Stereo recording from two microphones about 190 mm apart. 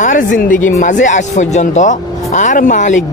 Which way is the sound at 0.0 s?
45° left (ahead or behind).